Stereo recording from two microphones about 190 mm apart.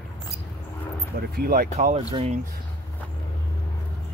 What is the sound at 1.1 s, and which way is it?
Speech, 55° right (ahead or behind).